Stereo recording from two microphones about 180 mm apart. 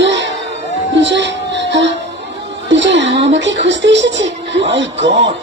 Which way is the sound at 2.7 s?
85° right.